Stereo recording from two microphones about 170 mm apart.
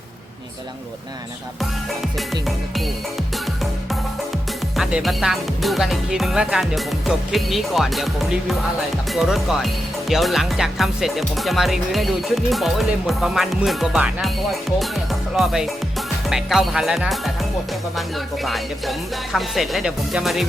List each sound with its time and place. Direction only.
3.3 s music: centre (ahead or behind)
4.8 s speech: 5° right (ahead or behind)
18.4 s speech: centre (ahead or behind)